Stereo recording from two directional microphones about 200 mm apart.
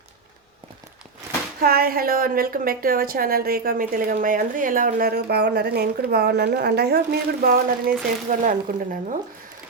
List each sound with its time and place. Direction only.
1.6 s a woman's voice: 50° right (ahead or behind)